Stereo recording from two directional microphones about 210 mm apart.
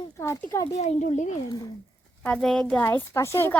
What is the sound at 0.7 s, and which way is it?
Speech, 35° left (ahead or behind).